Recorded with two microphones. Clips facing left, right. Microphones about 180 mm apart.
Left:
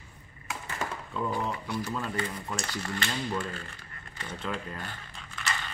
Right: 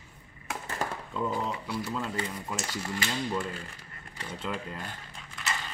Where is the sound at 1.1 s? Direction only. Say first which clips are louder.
Even; 5° right (ahead or behind).